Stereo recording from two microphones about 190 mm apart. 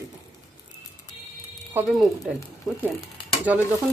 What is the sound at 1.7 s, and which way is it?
Speech, 5° right (ahead or behind).